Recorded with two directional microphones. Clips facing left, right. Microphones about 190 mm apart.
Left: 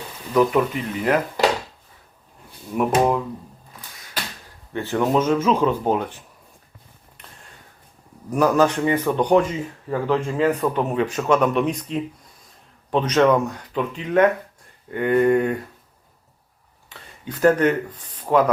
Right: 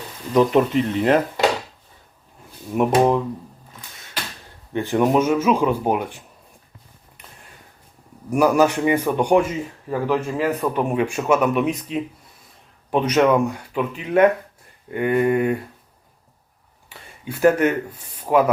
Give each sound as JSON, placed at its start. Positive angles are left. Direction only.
{"t": 0.3, "sound": "speech", "side_deg": -25}
{"t": 2.7, "sound": "speech", "side_deg": -20}
{"t": 4.7, "sound": "a man's voice", "side_deg": -15}
{"t": 8.3, "sound": "a man's voice", "side_deg": -10}
{"t": 16.9, "sound": "speech", "side_deg": -10}